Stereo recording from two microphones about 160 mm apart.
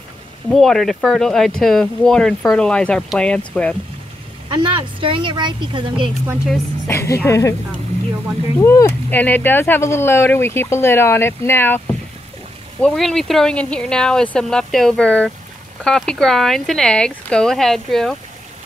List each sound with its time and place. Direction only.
0.5 s speech: centre (ahead or behind)
4.5 s speech: 30° right (ahead or behind)
6.9 s speech: 15° left (ahead or behind)
12.8 s speech: centre (ahead or behind)